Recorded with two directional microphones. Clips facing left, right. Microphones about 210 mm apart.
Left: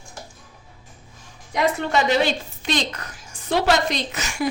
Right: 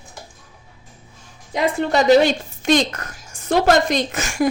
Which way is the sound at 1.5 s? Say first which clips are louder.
Right 2 dB; 35° right (ahead or behind).